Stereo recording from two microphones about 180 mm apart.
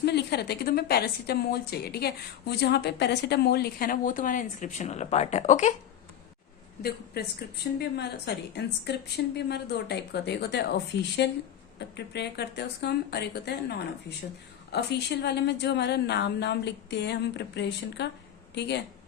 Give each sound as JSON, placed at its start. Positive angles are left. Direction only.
{"t": 0.0, "sound": "a woman's voice", "side_deg": 65}
{"t": 6.8, "sound": "a woman's voice", "side_deg": 60}